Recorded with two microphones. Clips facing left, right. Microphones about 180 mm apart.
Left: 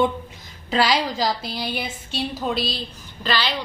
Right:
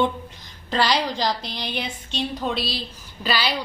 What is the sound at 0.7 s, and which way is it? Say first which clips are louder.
A woman's voice: left 1 dB; 10° left (ahead or behind).